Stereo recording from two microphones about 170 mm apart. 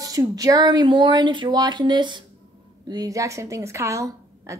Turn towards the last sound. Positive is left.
turn(degrees=-15)  # may be behind; listen again after turning